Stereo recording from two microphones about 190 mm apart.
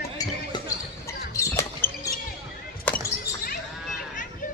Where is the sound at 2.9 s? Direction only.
50° left (ahead or behind).